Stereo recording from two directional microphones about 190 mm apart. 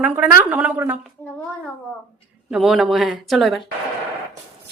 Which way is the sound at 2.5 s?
Centre (ahead or behind).